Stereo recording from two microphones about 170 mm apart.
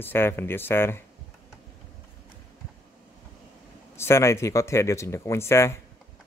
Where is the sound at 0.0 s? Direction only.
15° left (ahead or behind).